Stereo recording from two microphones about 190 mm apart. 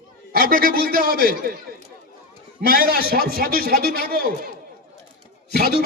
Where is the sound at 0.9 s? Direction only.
50° right (ahead or behind).